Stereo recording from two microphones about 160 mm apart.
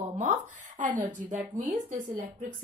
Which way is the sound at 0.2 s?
50° right (ahead or behind).